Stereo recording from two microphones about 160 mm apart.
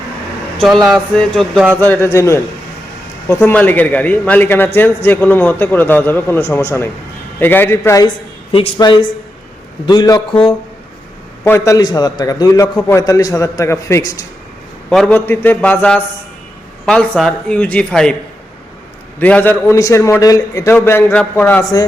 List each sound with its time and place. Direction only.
0.6 s a man's voice: centre (ahead or behind); by 8.1 s 20° left (ahead or behind)
8.5 s a man's voice: 35° left (ahead or behind)
11.4 s a man's voice: 15° left (ahead or behind)
14.8 s a man's voice: 5° left (ahead or behind)
19.2 s a man's voice: 10° left (ahead or behind)